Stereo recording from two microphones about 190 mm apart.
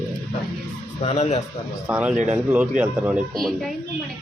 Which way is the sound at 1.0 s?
35° left (ahead or behind).